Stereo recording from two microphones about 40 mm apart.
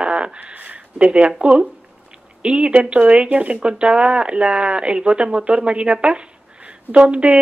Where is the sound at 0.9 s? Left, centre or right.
Right.